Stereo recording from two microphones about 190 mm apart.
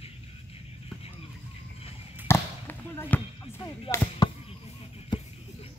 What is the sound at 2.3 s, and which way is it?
Basketball bounce, 10° left (ahead or behind).